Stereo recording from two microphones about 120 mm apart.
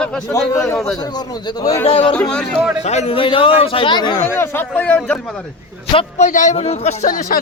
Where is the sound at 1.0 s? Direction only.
35° left (ahead or behind).